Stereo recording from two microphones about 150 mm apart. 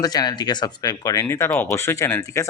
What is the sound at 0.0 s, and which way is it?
Speech, 25° left (ahead or behind).